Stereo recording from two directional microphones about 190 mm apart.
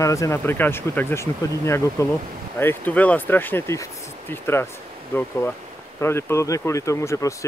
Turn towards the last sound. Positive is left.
turn(degrees=15)  # may be behind; listen again after turning